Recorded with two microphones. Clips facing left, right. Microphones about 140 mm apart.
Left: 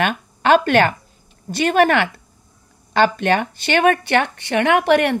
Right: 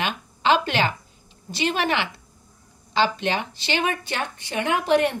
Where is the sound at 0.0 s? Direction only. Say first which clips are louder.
Left 5 dB; 55° left (ahead or behind).